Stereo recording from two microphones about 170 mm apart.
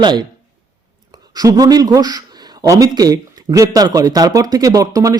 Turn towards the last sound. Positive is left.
turn(degrees=-20)  # may be behind; listen again after turning